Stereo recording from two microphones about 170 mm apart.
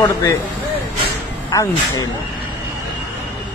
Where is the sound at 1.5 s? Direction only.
20° left (ahead or behind).